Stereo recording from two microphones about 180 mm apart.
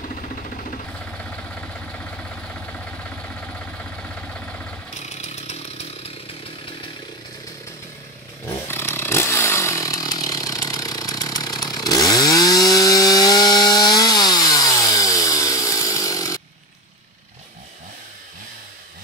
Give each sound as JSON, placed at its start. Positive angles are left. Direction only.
{"t": 0.1, "sound": "a sound", "side_deg": 45}
{"t": 1.1, "sound": "vehicle", "side_deg": 5}
{"t": 4.9, "sound": "chainsaw", "side_deg": 40}
{"t": 8.6, "sound": "chainsaw", "side_deg": 15}